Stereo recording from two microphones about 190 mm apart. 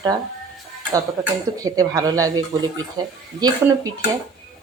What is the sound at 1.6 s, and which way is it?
Speech, 20° right (ahead or behind).